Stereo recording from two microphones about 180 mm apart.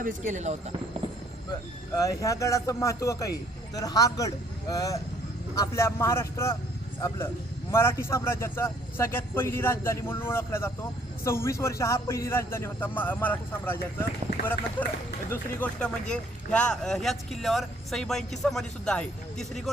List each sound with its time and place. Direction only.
0.0 s speech: 45° right (ahead or behind)
2.0 s a man's voice: 20° left (ahead or behind)
7.7 s a man's voice: 15° left (ahead or behind)
14.8 s a man's voice: 10° left (ahead or behind)